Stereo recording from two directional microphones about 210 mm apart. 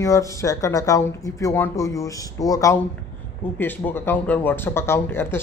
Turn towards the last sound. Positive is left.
turn(degrees=10)  # may be behind; listen again after turning